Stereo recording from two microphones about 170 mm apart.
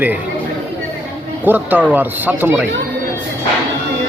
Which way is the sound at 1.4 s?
10° right (ahead or behind).